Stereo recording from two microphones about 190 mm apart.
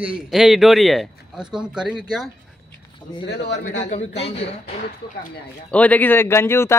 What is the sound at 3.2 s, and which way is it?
Speech, 60° left (ahead or behind).